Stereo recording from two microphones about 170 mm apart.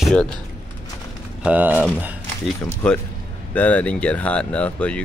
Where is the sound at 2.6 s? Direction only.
5° left (ahead or behind).